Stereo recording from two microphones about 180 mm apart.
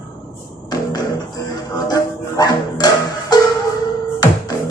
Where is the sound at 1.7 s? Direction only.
20° left (ahead or behind).